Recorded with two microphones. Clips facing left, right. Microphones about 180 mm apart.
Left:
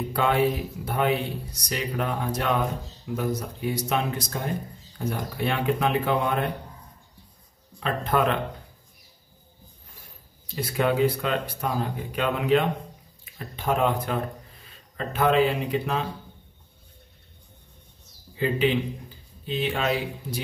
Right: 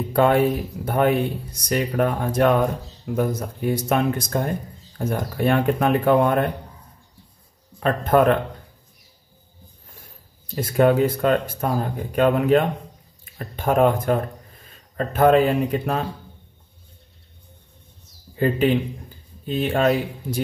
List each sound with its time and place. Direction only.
0.1 s speech: 45° right (ahead or behind)
7.8 s speech: 50° right (ahead or behind)
10.5 s speech: 45° right (ahead or behind)
18.3 s speech: 45° right (ahead or behind)